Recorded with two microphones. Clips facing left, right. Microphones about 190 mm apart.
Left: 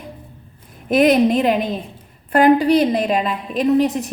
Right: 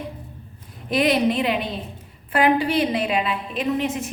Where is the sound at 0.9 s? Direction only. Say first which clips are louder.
Left 6 dB; 45° left (ahead or behind).